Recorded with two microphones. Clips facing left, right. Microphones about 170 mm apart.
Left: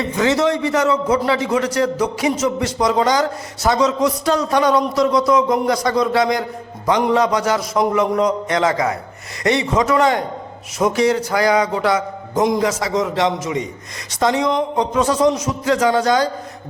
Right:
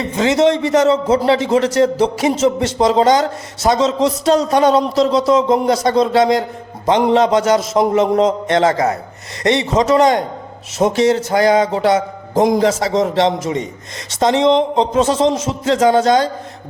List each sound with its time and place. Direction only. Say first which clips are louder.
0.2 s a man's voice: right 4 dB; 25° right (ahead or behind)
8.7 s a man's voice: right 3 dB; 40° right (ahead or behind)
9.4 s a man's voice: right 2 dB; 25° right (ahead or behind)
12.4 s a man's voice: right 4 dB; 40° right (ahead or behind)